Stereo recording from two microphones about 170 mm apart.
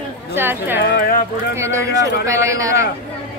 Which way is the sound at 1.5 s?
15° right (ahead or behind).